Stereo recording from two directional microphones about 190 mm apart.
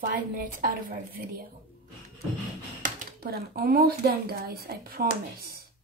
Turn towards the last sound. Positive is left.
turn(degrees=-55)  # may be behind; listen again after turning